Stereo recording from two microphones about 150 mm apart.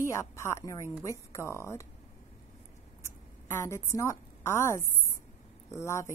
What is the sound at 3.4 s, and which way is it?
A woman's voice, 20° left (ahead or behind).